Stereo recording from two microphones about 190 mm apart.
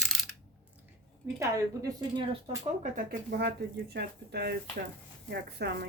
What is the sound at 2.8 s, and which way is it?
Speech, 50° right (ahead or behind).